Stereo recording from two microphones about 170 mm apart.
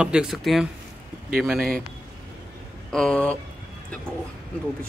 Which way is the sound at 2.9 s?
5° left (ahead or behind).